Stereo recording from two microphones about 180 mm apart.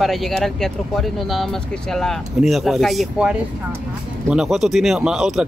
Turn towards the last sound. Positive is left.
turn(degrees=0)  # may be behind; listen again after turning